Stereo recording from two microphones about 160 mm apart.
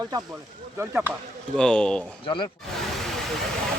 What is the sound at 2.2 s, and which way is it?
Speech, 30° left (ahead or behind).